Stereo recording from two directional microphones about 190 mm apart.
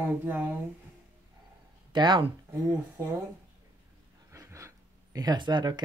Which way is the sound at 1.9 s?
25° right (ahead or behind).